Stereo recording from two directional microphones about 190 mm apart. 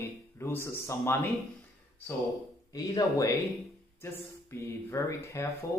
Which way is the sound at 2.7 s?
20° left (ahead or behind).